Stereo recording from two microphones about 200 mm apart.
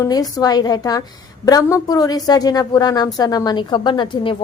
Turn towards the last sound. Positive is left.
turn(degrees=25)  # may be behind; listen again after turning